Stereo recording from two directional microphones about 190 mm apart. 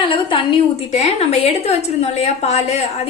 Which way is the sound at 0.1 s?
25° left (ahead or behind).